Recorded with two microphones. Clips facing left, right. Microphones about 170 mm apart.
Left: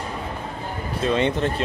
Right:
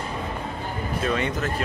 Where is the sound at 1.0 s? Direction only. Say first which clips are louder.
Left 5 dB; 25° left (ahead or behind).